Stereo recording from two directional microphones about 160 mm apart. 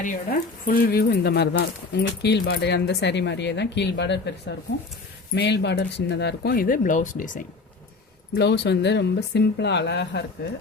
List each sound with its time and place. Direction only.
0.0 s speech: 65° left (ahead or behind)
8.4 s speech: 90° left